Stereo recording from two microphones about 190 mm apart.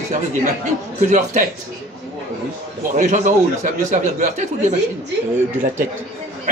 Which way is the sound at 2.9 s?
40° right (ahead or behind).